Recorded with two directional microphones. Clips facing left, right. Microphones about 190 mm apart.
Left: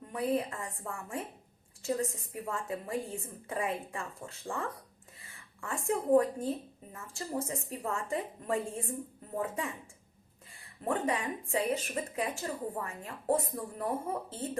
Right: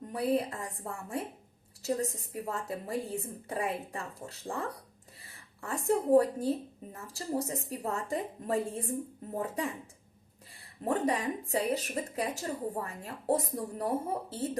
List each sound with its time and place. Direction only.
0.1 s a woman's voice: 35° right (ahead or behind)
10.8 s speech: 35° right (ahead or behind)